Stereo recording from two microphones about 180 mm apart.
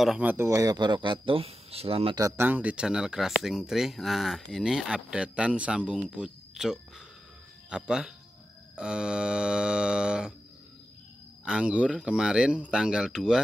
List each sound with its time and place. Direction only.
0.0 s speech: 5° right (ahead or behind); by 2.1 s 35° right (ahead or behind)
2.1 s speech: 15° right (ahead or behind)
11.4 s speech: 5° right (ahead or behind)